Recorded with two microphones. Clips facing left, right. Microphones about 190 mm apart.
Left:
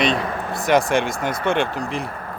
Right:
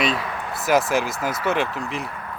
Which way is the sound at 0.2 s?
45° left (ahead or behind).